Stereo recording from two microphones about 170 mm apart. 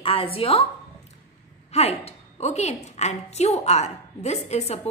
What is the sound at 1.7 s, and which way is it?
A woman's voice, 40° left (ahead or behind).